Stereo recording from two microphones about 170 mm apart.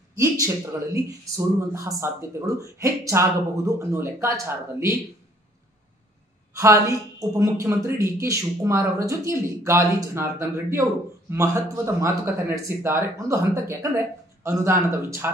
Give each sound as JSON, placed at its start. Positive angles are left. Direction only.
{"t": 1.2, "sound": "a woman's voice", "side_deg": -15}
{"t": 6.5, "sound": "a woman's voice", "side_deg": -15}